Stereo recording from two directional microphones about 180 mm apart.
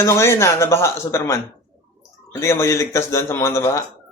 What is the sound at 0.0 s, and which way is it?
Speech, 15° left (ahead or behind).